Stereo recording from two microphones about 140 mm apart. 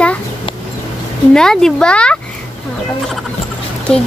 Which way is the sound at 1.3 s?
5° left (ahead or behind).